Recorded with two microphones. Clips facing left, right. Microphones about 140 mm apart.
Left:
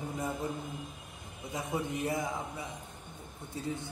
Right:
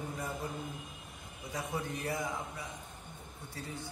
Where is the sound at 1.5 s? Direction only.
20° left (ahead or behind).